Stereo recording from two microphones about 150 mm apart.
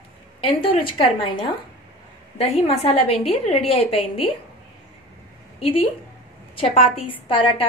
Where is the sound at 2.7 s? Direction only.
40° left (ahead or behind).